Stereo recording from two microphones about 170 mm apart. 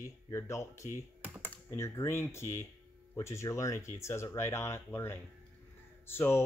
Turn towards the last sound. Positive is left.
turn(degrees=15)  # may be behind; listen again after turning